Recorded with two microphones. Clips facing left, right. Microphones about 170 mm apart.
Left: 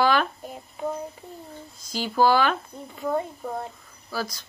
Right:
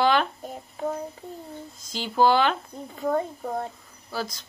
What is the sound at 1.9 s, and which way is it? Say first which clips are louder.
Speech: even; 20° right (ahead or behind).